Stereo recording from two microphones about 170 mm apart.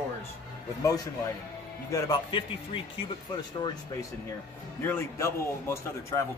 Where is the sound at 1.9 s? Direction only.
20° left (ahead or behind).